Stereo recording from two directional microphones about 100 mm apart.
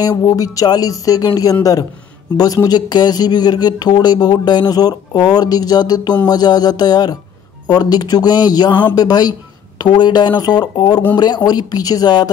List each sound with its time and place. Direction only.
0.0 s speech: 35° left (ahead or behind)